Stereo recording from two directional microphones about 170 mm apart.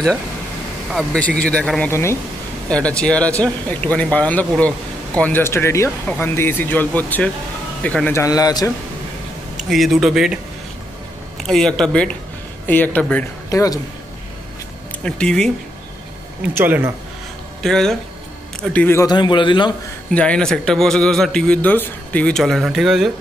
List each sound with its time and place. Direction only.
0.8 s a man's voice: 5° left (ahead or behind); by 8.7 s 20° left (ahead or behind)
9.6 s a man's voice: centre (ahead or behind); by 13.7 s 20° left (ahead or behind)
15.0 s a man's voice: 5° left (ahead or behind)
16.5 s speech: 10° right (ahead or behind)
17.6 s speech: 5° left (ahead or behind)
19.0 s a man's voice: 25° left (ahead or behind)
20.2 s a man's voice: 5° left (ahead or behind)